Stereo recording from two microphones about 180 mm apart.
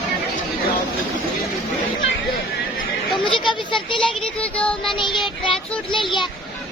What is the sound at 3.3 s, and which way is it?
Children playing, 25° left (ahead or behind).